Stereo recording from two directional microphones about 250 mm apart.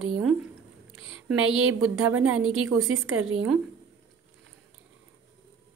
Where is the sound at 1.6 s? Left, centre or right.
Right.